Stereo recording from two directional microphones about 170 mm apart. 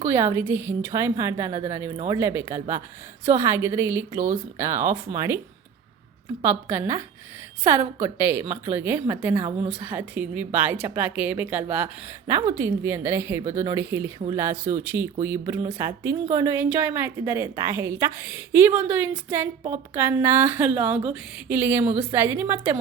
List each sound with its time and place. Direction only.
0.0 s a woman's voice: 15° right (ahead or behind)
6.4 s a woman's voice: 15° right (ahead or behind)